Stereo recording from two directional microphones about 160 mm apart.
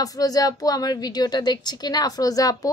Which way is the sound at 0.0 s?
25° left (ahead or behind).